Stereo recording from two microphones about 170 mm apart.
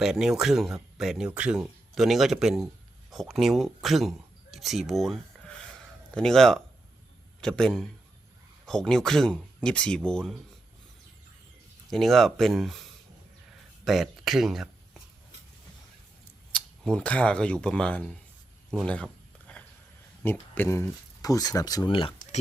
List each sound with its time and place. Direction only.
0.0 s speech: centre (ahead or behind)
4.5 s a sound: centre (ahead or behind)
6.1 s speech: centre (ahead or behind)
11.9 s speech: centre (ahead or behind)
13.8 s speech: centre (ahead or behind)
16.5 s speech: 5° left (ahead or behind)
18.7 s a sound: 5° left (ahead or behind)
20.2 s speech: 10° left (ahead or behind); by 22.1 s 30° left (ahead or behind)